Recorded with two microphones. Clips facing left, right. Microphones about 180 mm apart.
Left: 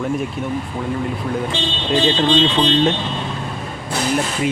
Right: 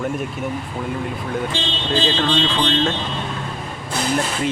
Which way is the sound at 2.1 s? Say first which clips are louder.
Left 4 dB; 20° left (ahead or behind).